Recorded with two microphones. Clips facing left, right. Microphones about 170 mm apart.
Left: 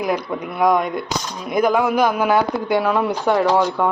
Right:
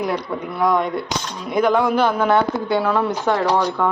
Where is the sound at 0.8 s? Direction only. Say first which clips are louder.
Even; 30° right (ahead or behind).